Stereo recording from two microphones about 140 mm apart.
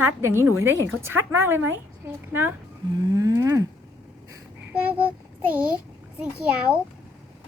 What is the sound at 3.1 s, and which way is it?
Mechanisms, 25° right (ahead or behind).